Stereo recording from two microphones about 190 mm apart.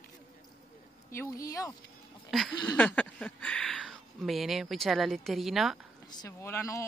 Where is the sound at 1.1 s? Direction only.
15° left (ahead or behind).